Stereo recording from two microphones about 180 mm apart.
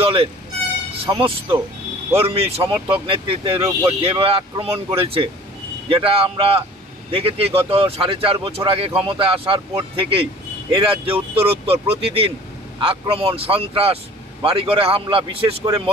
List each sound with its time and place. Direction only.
0.0 s speech: 30° right (ahead or behind)